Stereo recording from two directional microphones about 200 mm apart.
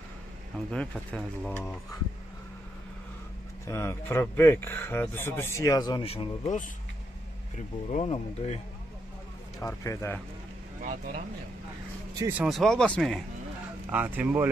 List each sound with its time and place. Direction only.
0.7 s speech: 5° left (ahead or behind)
3.6 s speech: 15° left (ahead or behind); by 6.6 s 30° left (ahead or behind)
7.9 s speech: 30° left (ahead or behind)
9.6 s speech: 15° left (ahead or behind)
10.8 s speech: 40° right (ahead or behind)
12.2 s speech: 10° right (ahead or behind)
13.8 s speech: 10° right (ahead or behind)